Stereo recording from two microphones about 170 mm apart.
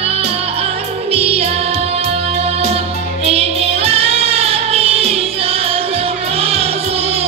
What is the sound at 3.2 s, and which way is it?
Music, 35° right (ahead or behind).